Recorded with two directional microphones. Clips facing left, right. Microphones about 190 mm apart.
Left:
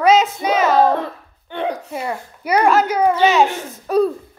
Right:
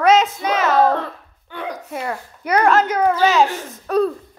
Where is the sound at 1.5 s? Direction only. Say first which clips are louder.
Left 6 dB; 25° left (ahead or behind).